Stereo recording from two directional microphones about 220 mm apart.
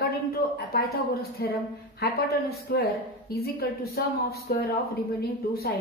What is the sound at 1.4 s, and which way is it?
Speech, 45° left (ahead or behind).